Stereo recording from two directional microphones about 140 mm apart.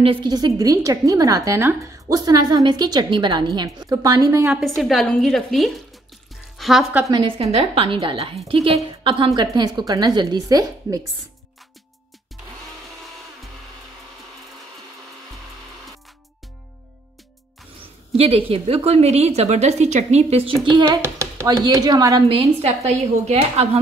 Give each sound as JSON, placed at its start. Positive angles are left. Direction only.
{"t": 0.0, "sound": "a woman's voice", "side_deg": -35}
{"t": 4.5, "sound": "a woman's voice", "side_deg": 0}
{"t": 7.1, "sound": "a woman's voice", "side_deg": -35}
{"t": 18.1, "sound": "a woman's voice", "side_deg": -45}
{"t": 20.6, "sound": "a woman's voice", "side_deg": -30}
{"t": 21.0, "sound": "a woman's voice", "side_deg": -20}
{"t": 22.3, "sound": "a woman's voice", "side_deg": -50}